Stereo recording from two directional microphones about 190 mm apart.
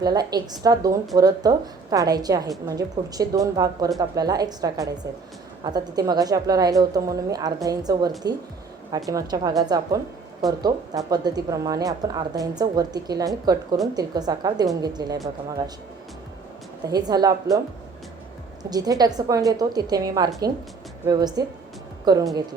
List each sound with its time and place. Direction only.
0.0 s a woman's voice: 20° right (ahead or behind)
16.8 s a woman's voice: 20° right (ahead or behind)
18.7 s a woman's voice: 20° right (ahead or behind)